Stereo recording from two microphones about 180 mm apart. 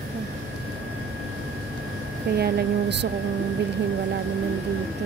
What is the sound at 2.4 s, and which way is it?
Speech, 65° right (ahead or behind).